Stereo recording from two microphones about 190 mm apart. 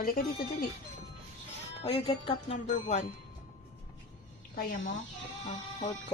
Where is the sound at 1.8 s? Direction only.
30° left (ahead or behind).